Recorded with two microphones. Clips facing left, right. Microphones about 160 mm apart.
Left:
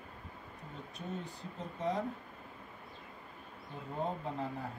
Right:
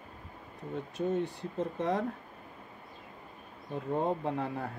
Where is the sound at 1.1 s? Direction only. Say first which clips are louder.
Right 11 dB; 70° right (ahead or behind).